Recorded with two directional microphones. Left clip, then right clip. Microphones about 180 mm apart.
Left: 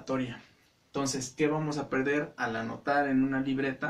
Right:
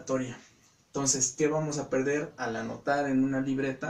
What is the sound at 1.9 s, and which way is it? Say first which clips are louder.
Speech: even; 15° left (ahead or behind).